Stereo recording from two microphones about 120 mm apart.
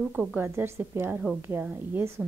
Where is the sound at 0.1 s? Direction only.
10° right (ahead or behind).